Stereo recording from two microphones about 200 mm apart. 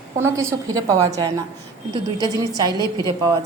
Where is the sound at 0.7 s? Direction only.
20° right (ahead or behind).